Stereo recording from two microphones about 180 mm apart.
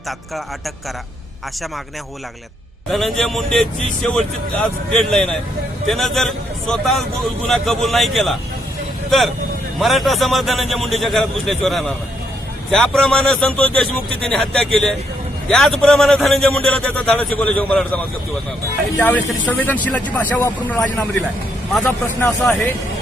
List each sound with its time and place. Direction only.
2.9 s a man's voice: centre (ahead or behind)